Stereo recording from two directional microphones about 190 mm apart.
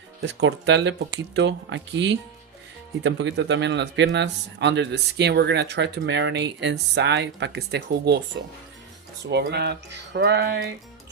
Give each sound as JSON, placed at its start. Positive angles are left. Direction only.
{"t": 0.2, "sound": "speech", "side_deg": -75}
{"t": 9.3, "sound": "speech", "side_deg": -60}